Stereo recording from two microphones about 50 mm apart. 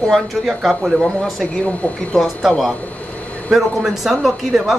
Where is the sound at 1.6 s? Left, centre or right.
Left.